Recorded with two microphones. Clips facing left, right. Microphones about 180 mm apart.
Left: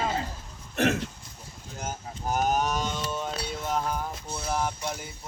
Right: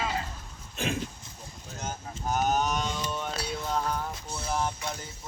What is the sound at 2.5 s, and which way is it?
Music, 5° left (ahead or behind).